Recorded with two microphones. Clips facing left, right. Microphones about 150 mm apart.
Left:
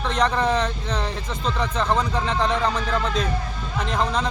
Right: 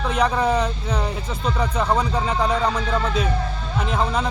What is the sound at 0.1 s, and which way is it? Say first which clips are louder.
Speech: right 1 dB; 10° right (ahead or behind).